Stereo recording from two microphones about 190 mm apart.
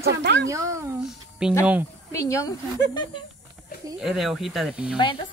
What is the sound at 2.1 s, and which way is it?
Speech, 15° left (ahead or behind).